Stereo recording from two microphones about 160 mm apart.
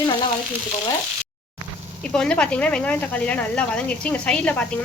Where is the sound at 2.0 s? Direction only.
5° left (ahead or behind).